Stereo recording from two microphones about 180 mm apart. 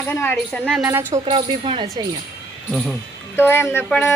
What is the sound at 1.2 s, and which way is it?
Speech, 30° right (ahead or behind).